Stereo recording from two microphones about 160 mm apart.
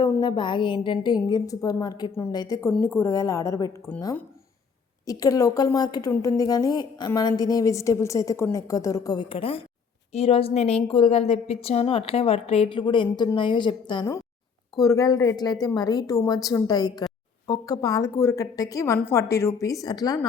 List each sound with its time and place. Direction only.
0.2 s a woman's voice: 30° left (ahead or behind)
5.0 s a woman's voice: 20° left (ahead or behind)
9.3 s a woman's voice: 35° left (ahead or behind)